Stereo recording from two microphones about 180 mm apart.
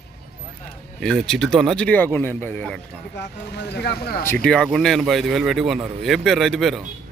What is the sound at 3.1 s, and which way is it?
Speech, 65° left (ahead or behind).